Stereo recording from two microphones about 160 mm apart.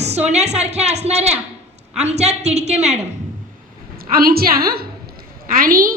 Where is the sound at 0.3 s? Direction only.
45° right (ahead or behind).